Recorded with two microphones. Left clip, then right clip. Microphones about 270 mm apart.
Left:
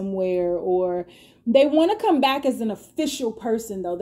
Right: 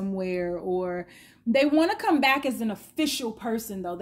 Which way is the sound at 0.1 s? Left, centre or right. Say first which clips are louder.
Left 8 dB; right.